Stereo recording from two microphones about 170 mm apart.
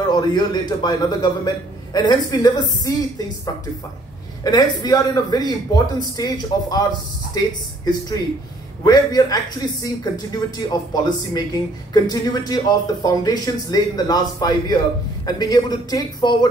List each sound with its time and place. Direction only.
0.1 s speech: 25° left (ahead or behind)
4.5 s speech: 25° left (ahead or behind)
10.7 s speech: 25° left (ahead or behind)